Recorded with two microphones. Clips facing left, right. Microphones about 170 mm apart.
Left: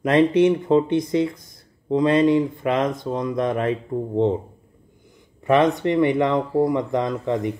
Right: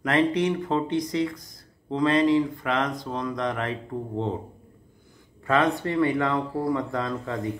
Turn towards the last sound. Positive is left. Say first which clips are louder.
# left 6 dB
turn(degrees=20)  # may be behind; listen again after turning